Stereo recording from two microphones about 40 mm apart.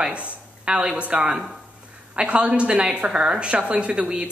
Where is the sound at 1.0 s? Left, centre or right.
Right.